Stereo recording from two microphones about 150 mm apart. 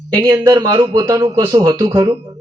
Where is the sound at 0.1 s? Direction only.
25° right (ahead or behind).